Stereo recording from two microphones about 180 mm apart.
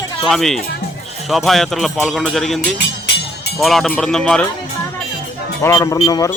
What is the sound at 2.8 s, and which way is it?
Music, 65° left (ahead or behind).